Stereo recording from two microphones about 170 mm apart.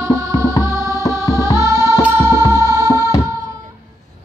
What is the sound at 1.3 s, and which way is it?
Music, 15° left (ahead or behind).